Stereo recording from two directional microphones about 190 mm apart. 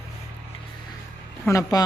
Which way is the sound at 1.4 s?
20° left (ahead or behind).